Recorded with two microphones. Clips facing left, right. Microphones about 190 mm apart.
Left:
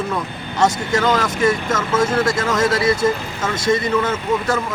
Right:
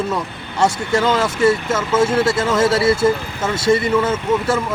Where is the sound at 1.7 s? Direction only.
10° right (ahead or behind).